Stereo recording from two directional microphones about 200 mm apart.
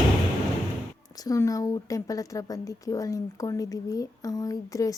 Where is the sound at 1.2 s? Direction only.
15° left (ahead or behind).